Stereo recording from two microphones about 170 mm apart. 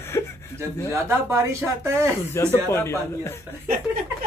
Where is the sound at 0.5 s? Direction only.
15° right (ahead or behind).